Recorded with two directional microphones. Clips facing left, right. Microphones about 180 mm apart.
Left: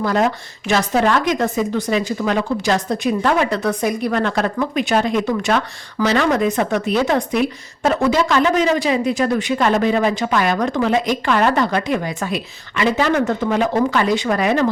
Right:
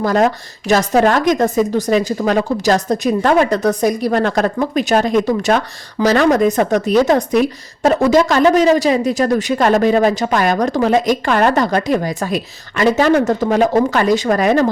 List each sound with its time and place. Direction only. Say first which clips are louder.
0.0 s a woman's voice: right 3 dB; 45° right (ahead or behind)